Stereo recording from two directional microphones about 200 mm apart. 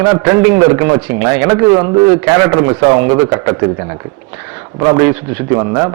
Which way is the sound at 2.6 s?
20° right (ahead or behind).